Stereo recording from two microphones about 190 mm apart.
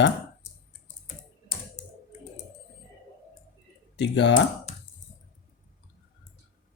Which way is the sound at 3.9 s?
65° left (ahead or behind).